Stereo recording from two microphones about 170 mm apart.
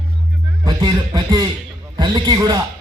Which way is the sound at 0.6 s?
25° right (ahead or behind).